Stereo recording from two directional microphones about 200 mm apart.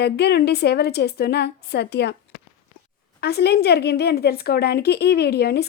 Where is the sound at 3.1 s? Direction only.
55° left (ahead or behind).